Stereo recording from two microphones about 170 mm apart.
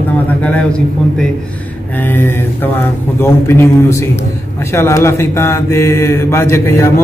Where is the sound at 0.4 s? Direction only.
5° left (ahead or behind).